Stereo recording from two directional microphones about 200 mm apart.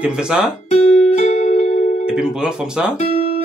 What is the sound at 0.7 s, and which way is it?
Music, 35° left (ahead or behind).